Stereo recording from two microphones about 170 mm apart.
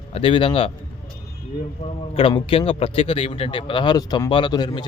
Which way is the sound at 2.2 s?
30° left (ahead or behind).